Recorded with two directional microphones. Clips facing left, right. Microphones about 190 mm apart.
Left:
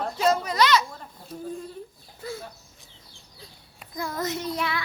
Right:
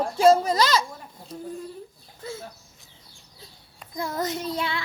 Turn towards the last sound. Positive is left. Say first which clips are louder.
# even
turn(degrees=-30)  # may be behind; listen again after turning